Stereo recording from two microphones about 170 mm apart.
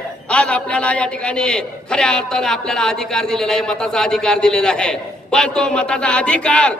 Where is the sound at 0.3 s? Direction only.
5° left (ahead or behind).